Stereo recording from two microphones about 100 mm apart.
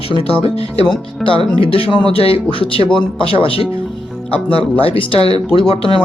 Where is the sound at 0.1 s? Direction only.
70° left (ahead or behind).